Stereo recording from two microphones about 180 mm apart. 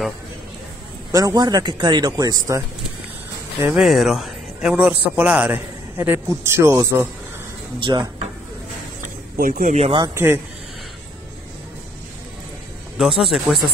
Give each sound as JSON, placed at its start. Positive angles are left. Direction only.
{"t": 1.1, "sound": "speech", "side_deg": -20}
{"t": 3.7, "sound": "a man's voice", "side_deg": 0}
{"t": 7.8, "sound": "speech", "side_deg": -25}
{"t": 9.4, "sound": "speech", "side_deg": -50}
{"t": 10.0, "sound": "a man's voice", "side_deg": -15}
{"t": 12.9, "sound": "speech", "side_deg": 0}